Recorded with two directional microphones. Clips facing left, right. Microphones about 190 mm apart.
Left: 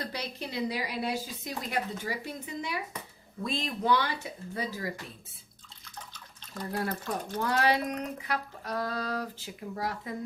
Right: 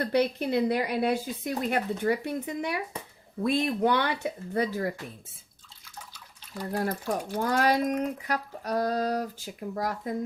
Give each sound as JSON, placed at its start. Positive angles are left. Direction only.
{"t": 0.0, "sound": "speech", "side_deg": -55}
{"t": 6.1, "sound": "water", "side_deg": -10}
{"t": 6.8, "sound": "speech", "side_deg": -10}
{"t": 7.4, "sound": "speech", "side_deg": -45}